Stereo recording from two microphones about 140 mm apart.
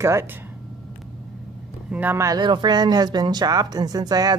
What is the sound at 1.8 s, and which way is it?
Speech, 10° right (ahead or behind).